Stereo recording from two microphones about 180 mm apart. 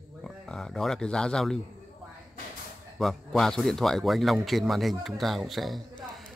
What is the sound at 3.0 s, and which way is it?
Speech, centre (ahead or behind).